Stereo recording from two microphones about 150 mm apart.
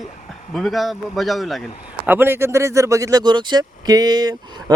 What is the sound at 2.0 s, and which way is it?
Speech, 15° right (ahead or behind).